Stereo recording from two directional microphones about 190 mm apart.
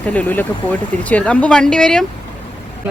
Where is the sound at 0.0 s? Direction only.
10° left (ahead or behind).